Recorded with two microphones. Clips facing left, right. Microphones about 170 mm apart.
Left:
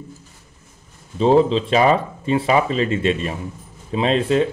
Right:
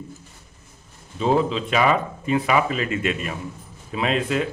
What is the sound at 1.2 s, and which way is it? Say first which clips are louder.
Speech: left 6 dB; 30° left (ahead or behind).